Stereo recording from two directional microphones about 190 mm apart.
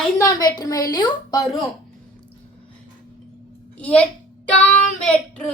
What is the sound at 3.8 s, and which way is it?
Speech, 5° left (ahead or behind).